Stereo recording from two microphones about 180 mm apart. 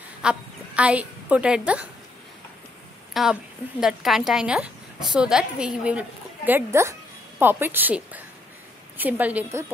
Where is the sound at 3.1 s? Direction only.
Centre (ahead or behind).